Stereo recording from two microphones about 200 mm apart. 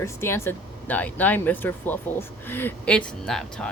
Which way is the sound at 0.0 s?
10° left (ahead or behind).